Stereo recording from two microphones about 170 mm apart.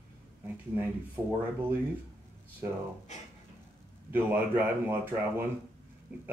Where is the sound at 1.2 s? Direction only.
15° right (ahead or behind).